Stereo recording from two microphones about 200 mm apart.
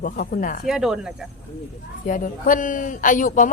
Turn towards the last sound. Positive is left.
turn(degrees=40)  # may be behind; listen again after turning